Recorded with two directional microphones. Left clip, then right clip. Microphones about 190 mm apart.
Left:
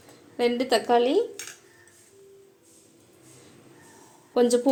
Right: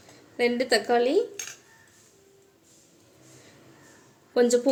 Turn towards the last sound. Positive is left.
turn(degrees=-10)  # may be behind; listen again after turning